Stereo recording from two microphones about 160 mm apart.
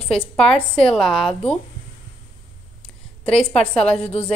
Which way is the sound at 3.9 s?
40° left (ahead or behind).